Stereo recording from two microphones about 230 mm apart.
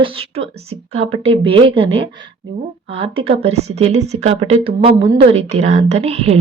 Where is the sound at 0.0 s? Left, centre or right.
Right.